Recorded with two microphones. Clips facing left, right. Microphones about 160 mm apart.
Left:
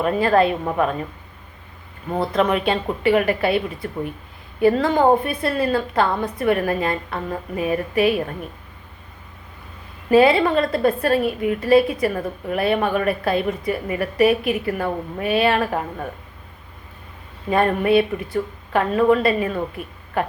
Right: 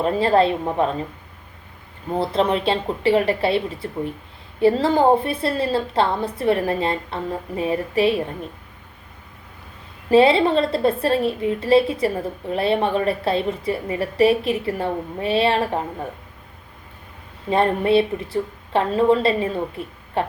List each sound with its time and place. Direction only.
0.0 s a woman's voice: 25° right (ahead or behind)
2.1 s a woman's voice: 30° right (ahead or behind)
10.1 s a woman's voice: 25° right (ahead or behind)
17.5 s a woman's voice: 25° right (ahead or behind)